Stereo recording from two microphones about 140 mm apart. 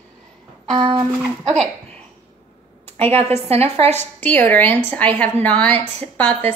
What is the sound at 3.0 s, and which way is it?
Speech, 45° right (ahead or behind).